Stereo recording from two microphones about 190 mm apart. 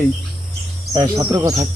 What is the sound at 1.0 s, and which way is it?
Cricket, 20° right (ahead or behind).